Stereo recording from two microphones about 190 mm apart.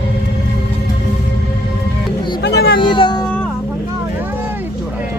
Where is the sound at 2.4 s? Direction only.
55° left (ahead or behind).